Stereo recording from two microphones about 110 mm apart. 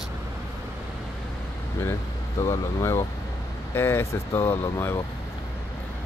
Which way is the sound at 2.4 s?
30° left (ahead or behind).